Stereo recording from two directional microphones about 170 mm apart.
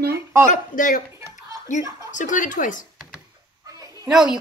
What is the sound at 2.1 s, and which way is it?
Speech, 50° left (ahead or behind).